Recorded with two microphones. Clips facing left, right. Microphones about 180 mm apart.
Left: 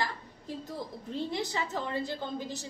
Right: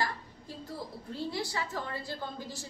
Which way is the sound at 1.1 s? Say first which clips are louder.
Left 2 dB; 20° left (ahead or behind).